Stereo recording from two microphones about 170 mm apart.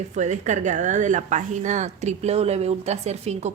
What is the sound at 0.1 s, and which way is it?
A woman's voice, 45° right (ahead or behind).